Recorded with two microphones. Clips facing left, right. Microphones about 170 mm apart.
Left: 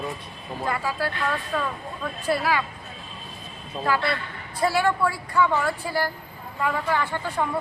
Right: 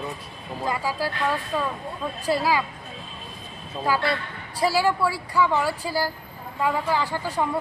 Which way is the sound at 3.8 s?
15° right (ahead or behind).